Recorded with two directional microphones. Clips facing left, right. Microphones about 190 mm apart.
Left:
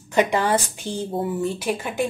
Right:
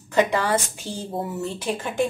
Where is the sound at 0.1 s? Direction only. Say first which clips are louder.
Left 1 dB; 20° left (ahead or behind).